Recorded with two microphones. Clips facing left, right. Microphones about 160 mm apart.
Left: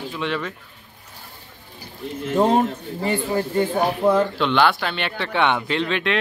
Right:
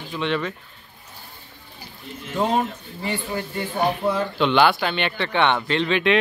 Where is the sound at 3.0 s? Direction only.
40° left (ahead or behind).